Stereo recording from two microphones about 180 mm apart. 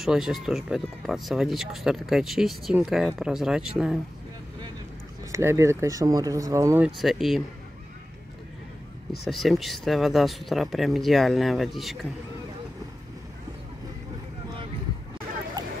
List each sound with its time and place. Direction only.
0.0 s speech: centre (ahead or behind)
5.3 s speech: 15° right (ahead or behind)
7.0 s speech: centre (ahead or behind)
9.2 s speech: centre (ahead or behind)